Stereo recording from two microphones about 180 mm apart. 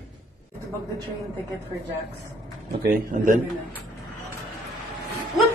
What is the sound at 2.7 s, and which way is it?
Speech, 55° right (ahead or behind).